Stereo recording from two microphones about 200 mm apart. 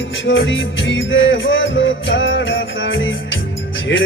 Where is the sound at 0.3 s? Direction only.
65° left (ahead or behind).